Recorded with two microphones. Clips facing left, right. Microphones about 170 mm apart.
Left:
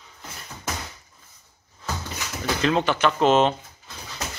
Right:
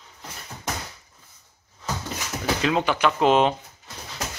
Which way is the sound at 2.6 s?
10° right (ahead or behind).